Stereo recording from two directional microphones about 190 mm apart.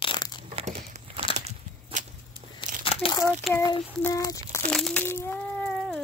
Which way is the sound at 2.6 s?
25° left (ahead or behind).